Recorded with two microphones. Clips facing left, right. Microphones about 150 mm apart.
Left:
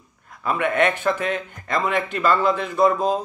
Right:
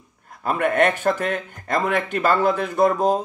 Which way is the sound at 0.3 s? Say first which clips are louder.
Right 1 dB; 45° right (ahead or behind).